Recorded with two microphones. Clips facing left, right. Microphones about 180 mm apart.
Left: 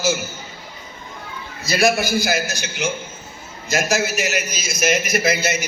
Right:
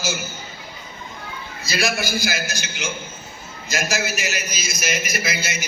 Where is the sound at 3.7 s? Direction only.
60° left (ahead or behind).